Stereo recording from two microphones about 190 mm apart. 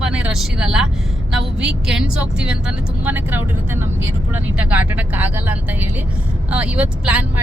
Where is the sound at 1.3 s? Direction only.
5° right (ahead or behind).